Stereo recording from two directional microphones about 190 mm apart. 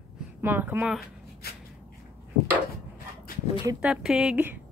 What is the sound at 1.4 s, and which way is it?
Shuffle, 55° left (ahead or behind).